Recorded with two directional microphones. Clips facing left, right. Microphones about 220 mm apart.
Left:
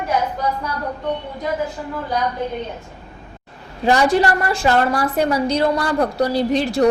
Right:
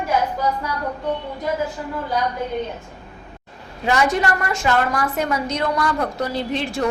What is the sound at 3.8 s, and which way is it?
A woman's voice, 35° left (ahead or behind).